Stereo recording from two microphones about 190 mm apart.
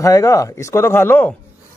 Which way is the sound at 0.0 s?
15° left (ahead or behind).